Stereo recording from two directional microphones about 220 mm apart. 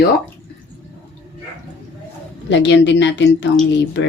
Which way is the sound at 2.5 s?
55° left (ahead or behind).